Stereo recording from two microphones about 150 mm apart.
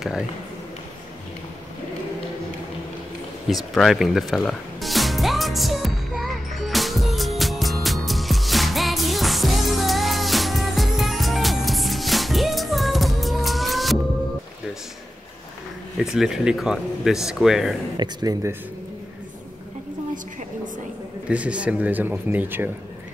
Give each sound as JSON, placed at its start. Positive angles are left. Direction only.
{"t": 3.4, "sound": "music", "side_deg": 0}
{"t": 16.0, "sound": "speech", "side_deg": 0}
{"t": 17.9, "sound": "speech", "side_deg": -25}
{"t": 21.3, "sound": "speech", "side_deg": -10}